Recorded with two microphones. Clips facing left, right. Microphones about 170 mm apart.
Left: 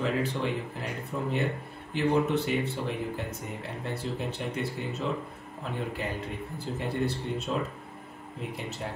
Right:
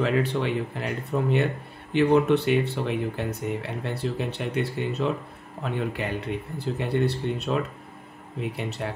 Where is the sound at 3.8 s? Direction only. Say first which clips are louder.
Right 1 dB; 70° right (ahead or behind).